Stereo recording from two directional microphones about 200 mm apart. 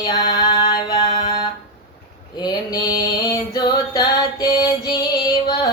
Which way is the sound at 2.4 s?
20° left (ahead or behind).